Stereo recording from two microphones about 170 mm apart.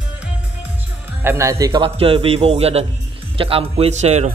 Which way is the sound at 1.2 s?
15° right (ahead or behind).